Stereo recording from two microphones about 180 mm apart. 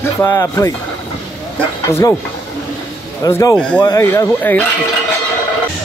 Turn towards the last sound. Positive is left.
turn(degrees=15)  # may be behind; listen again after turning